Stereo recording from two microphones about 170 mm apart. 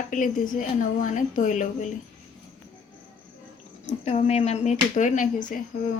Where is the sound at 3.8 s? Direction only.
40° left (ahead or behind).